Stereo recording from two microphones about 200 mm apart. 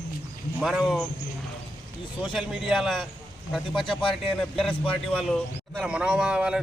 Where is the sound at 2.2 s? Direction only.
Centre (ahead or behind).